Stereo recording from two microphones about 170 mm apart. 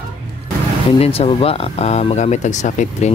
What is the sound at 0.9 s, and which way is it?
Speech, 35° left (ahead or behind).